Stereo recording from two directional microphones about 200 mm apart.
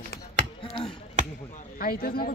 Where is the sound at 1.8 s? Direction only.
45° left (ahead or behind).